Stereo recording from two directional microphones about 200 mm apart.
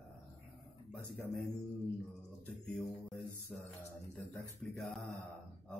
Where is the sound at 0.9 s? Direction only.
5° left (ahead or behind).